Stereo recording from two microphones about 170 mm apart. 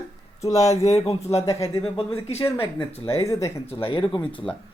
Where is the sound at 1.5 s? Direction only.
15° left (ahead or behind).